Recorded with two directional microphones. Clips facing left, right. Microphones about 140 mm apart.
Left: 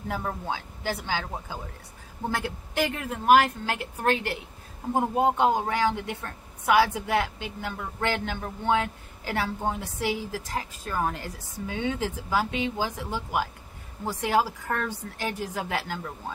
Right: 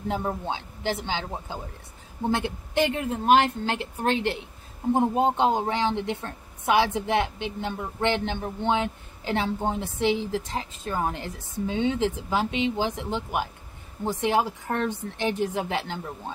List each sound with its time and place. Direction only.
0.1 s a woman's voice: 20° right (ahead or behind)